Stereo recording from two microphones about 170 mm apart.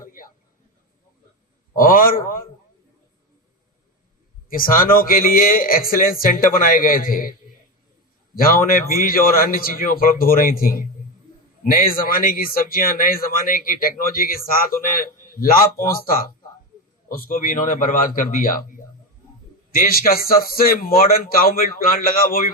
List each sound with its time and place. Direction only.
0.0 s a sound: 55° left (ahead or behind)
1.8 s speech: 55° left (ahead or behind)
4.4 s speech: 55° left (ahead or behind)
8.4 s speech: 60° left (ahead or behind)
19.7 s speech: 60° left (ahead or behind)